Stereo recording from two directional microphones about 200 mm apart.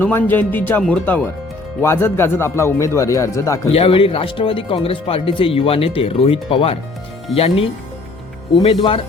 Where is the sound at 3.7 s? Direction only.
30° left (ahead or behind).